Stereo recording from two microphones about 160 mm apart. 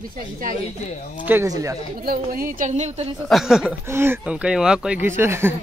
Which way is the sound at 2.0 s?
70° right (ahead or behind).